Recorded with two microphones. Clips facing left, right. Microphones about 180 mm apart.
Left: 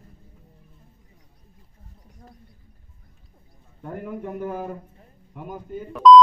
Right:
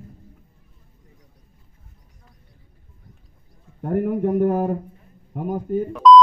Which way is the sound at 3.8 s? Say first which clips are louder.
Right 11 dB; 55° right (ahead or behind).